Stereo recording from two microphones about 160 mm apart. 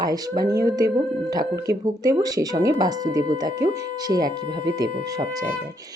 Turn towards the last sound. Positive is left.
turn(degrees=-25)  # may be behind; listen again after turning